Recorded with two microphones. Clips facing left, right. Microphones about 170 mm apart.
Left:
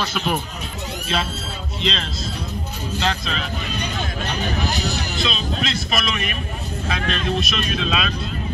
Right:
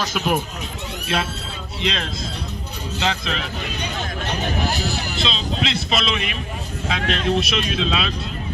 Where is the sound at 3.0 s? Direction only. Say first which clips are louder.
Right 1 dB; 15° right (ahead or behind).